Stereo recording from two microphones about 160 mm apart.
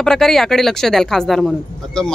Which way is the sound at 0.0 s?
5° left (ahead or behind).